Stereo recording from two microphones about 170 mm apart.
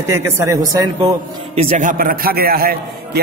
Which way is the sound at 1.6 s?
40° right (ahead or behind).